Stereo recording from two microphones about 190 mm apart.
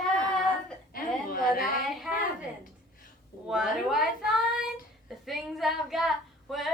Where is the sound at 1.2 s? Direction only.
50° left (ahead or behind).